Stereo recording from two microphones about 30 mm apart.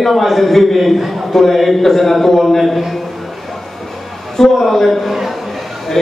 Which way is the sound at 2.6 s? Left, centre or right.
Centre.